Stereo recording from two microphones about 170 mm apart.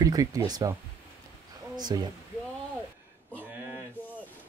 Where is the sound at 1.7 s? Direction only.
25° right (ahead or behind).